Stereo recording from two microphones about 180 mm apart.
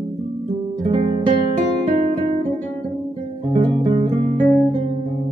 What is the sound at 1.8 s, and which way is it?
Guitar, 35° right (ahead or behind).